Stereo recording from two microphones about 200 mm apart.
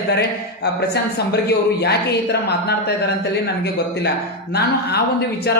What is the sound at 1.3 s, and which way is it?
Speech, 55° left (ahead or behind).